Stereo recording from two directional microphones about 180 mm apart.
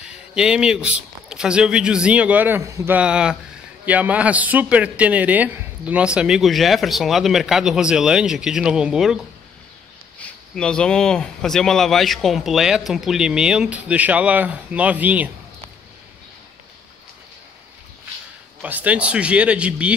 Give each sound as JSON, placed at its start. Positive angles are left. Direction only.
{"t": 0.0, "sound": "a man's voice", "side_deg": -5}
{"t": 10.2, "sound": "a man's voice", "side_deg": 5}
{"t": 18.6, "sound": "speech", "side_deg": -10}